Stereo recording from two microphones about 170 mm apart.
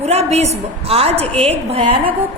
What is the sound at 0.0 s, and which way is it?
A woman's voice, 40° right (ahead or behind).